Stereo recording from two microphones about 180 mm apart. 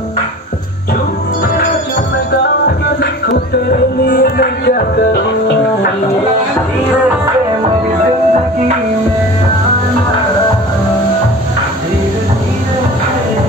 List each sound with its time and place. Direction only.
3.0 s music: 60° left (ahead or behind)